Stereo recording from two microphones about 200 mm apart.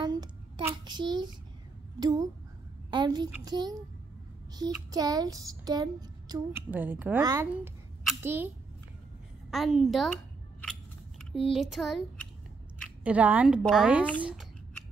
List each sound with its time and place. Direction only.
0.0 s a sound: 20° right (ahead or behind)
2.0 s speech: 20° right (ahead or behind)
6.7 s a woman's voice: 10° right (ahead or behind)
9.5 s a woman's voice: centre (ahead or behind)
11.1 s a woman's voice: centre (ahead or behind)